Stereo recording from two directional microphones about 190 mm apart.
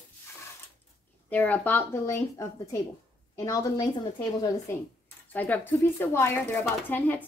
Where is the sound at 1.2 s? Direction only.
10° left (ahead or behind).